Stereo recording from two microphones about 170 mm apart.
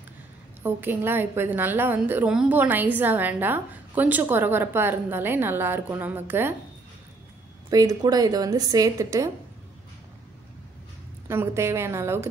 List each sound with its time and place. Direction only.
0.6 s a woman's voice: 10° right (ahead or behind)
7.7 s a woman's voice: 20° right (ahead or behind)
11.2 s a woman's voice: 15° right (ahead or behind)